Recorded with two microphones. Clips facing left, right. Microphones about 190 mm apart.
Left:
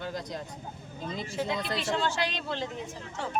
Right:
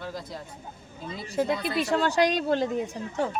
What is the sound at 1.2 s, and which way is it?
Speech, 40° right (ahead or behind).